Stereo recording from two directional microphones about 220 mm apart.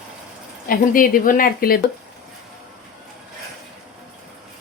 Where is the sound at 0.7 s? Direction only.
40° left (ahead or behind).